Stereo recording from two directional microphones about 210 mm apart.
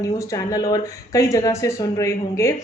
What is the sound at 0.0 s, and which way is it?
A woman's voice, 15° left (ahead or behind).